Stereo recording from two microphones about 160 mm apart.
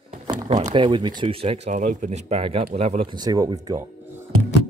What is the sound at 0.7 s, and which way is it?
Speech, 30° right (ahead or behind).